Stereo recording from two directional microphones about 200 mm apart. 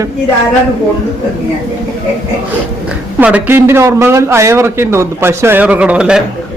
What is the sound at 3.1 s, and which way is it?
A man's voice, 10° right (ahead or behind).